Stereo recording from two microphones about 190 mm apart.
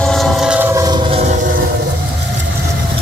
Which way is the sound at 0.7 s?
20° right (ahead or behind).